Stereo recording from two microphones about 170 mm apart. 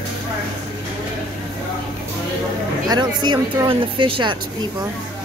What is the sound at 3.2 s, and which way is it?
A woman's voice, 25° right (ahead or behind).